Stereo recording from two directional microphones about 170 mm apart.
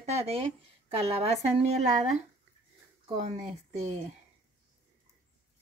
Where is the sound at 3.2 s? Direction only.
40° right (ahead or behind).